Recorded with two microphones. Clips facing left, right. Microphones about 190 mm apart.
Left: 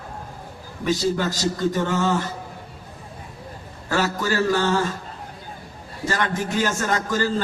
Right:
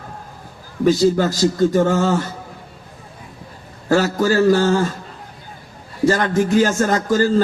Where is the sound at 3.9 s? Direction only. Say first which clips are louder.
Right 7 dB; 35° right (ahead or behind).